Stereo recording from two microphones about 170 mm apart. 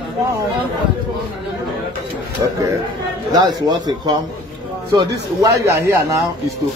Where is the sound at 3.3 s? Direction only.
25° right (ahead or behind).